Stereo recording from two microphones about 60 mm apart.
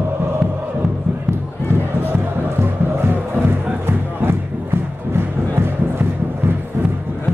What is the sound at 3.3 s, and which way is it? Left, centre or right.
Music, right.